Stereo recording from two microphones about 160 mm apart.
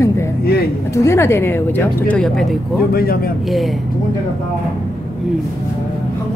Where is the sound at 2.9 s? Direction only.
70° left (ahead or behind).